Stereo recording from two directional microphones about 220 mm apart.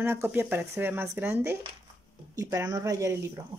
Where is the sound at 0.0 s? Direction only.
10° right (ahead or behind).